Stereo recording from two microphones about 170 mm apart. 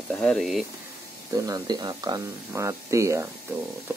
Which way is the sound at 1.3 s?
20° right (ahead or behind).